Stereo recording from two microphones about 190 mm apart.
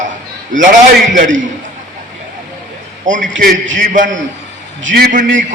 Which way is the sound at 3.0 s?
40° right (ahead or behind).